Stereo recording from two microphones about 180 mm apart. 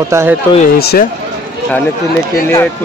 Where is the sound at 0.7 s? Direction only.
60° left (ahead or behind).